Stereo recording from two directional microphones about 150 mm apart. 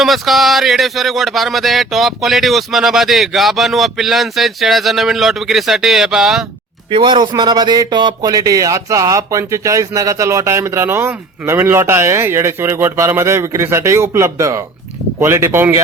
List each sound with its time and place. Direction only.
0.0 s speech: centre (ahead or behind)
6.9 s speech: 30° right (ahead or behind)